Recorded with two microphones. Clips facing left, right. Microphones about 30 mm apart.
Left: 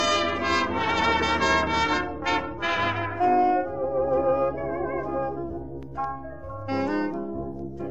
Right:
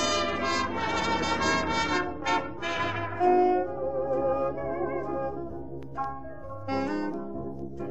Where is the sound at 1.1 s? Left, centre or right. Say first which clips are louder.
Left 4 dB; centre.